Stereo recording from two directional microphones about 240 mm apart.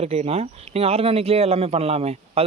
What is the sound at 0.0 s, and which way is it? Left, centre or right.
Speech, right.